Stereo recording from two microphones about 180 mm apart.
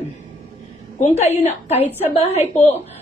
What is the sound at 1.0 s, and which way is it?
Speech, 40° left (ahead or behind).